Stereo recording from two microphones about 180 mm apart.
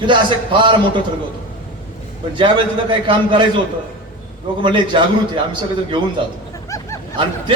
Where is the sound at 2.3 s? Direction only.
25° right (ahead or behind).